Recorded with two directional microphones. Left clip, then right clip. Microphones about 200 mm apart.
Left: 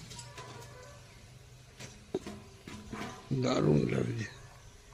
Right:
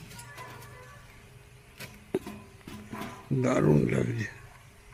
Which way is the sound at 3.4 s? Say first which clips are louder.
Right 4 dB; 25° right (ahead or behind).